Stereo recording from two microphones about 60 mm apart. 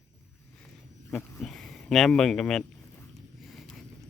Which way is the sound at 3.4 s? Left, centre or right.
Centre.